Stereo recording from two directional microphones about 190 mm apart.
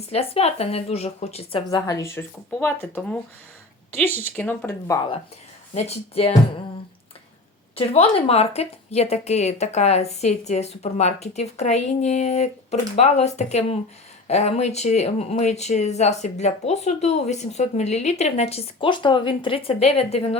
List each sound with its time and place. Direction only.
0.1 s speech: 30° left (ahead or behind)
1.7 s speech: 15° left (ahead or behind)
4.2 s speech: 10° left (ahead or behind)
5.7 s speech: 35° left (ahead or behind)
7.8 s speech: 30° left (ahead or behind)